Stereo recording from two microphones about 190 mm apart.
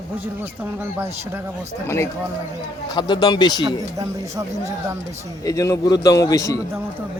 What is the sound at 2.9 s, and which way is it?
Speech, 25° left (ahead or behind).